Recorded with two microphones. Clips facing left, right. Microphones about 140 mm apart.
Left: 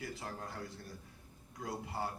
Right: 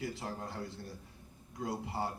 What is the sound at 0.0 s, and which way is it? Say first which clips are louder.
A man's voice: right 4 dB; 25° right (ahead or behind).